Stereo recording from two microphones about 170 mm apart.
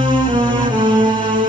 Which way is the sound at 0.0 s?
30° right (ahead or behind).